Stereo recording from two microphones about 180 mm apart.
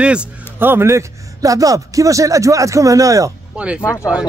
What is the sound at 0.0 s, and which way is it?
A man's voice, 5° right (ahead or behind).